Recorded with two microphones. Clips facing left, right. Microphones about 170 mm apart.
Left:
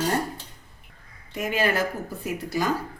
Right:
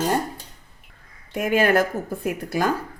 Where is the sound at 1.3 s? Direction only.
55° right (ahead or behind).